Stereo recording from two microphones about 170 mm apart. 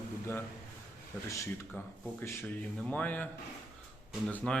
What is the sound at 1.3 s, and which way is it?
A man's voice, 15° left (ahead or behind).